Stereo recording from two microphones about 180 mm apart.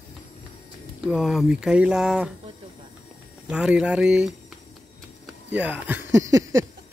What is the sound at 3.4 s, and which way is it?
Speech, 5° right (ahead or behind).